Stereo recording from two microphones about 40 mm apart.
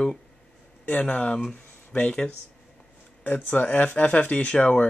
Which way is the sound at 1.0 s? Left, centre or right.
Left.